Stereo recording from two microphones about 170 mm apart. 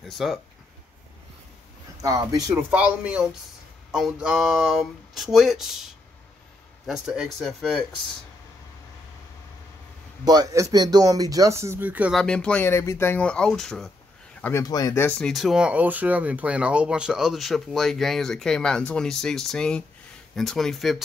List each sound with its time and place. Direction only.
0.0 s speech: centre (ahead or behind)
2.0 s speech: 20° right (ahead or behind)
2.7 s speech: 5° right (ahead or behind)
6.9 s speech: 5° right (ahead or behind)
10.2 s speech: 20° right (ahead or behind)
12.2 s speech: 5° left (ahead or behind)
14.4 s speech: 20° left (ahead or behind)
15.0 s speech: 5° left (ahead or behind)